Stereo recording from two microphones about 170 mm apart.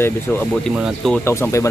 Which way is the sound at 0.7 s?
5° right (ahead or behind).